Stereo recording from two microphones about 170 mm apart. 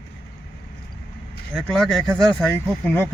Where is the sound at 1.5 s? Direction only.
Centre (ahead or behind).